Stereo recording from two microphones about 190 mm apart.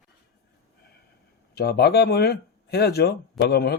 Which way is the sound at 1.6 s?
55° left (ahead or behind).